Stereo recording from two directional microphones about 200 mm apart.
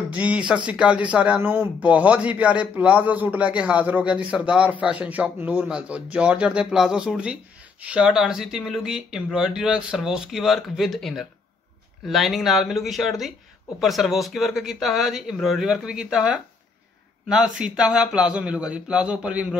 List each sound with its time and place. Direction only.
0.1 s a man's voice: 5° right (ahead or behind)